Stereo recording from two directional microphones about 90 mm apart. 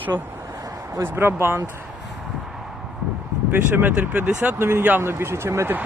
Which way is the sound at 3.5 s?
20° right (ahead or behind).